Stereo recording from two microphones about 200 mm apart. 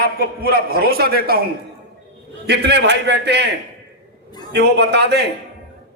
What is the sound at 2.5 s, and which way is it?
Speech, 55° right (ahead or behind).